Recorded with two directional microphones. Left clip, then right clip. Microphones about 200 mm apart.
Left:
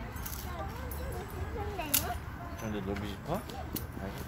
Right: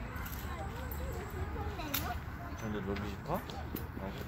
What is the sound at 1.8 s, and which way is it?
Whip, 30° left (ahead or behind).